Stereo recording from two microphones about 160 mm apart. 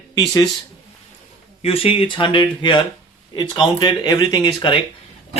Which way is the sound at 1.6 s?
35° left (ahead or behind).